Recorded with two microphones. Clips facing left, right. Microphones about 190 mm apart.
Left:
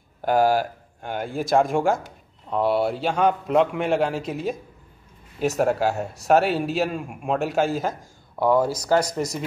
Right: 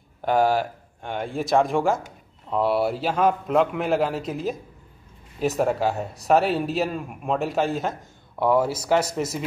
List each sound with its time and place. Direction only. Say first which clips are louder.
0.2 s speech: left 1 dB; centre (ahead or behind)